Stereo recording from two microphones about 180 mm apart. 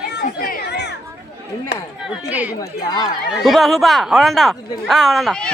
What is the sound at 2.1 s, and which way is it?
Speech, 10° right (ahead or behind).